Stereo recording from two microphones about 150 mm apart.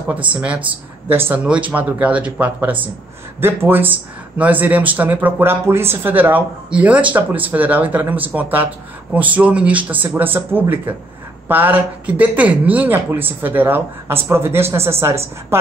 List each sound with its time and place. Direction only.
0.3 s speech: 10° right (ahead or behind)